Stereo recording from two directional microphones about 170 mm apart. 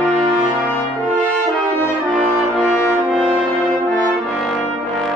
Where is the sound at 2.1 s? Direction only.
Centre (ahead or behind).